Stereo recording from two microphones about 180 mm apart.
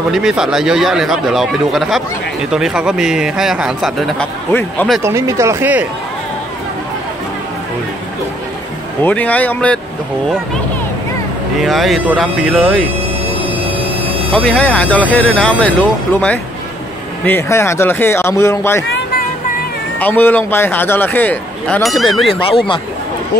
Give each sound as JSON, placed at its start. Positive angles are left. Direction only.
{"t": 0.1, "sound": "a man's voice", "side_deg": -5}
{"t": 4.5, "sound": "speech", "side_deg": 10}
{"t": 5.0, "sound": "speech", "side_deg": -15}
{"t": 9.0, "sound": "speech", "side_deg": 10}
{"t": 11.6, "sound": "a man's voice", "side_deg": 0}
{"t": 14.3, "sound": "speech", "side_deg": 5}
{"t": 20.0, "sound": "speech", "side_deg": 10}
{"t": 22.3, "sound": "speech", "side_deg": 30}